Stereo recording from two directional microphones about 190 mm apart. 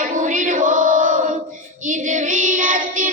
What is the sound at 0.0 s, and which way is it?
Chant, 40° right (ahead or behind).